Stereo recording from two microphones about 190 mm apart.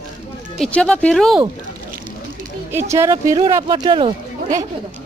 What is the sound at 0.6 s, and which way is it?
Speech, 5° left (ahead or behind).